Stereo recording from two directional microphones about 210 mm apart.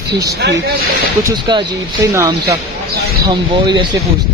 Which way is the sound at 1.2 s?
20° right (ahead or behind).